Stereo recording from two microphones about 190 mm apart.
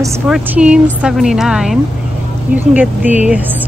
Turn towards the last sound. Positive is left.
turn(degrees=-5)  # may be behind; listen again after turning